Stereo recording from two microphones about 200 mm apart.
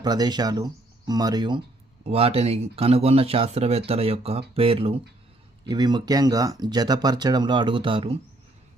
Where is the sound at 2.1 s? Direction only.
30° right (ahead or behind).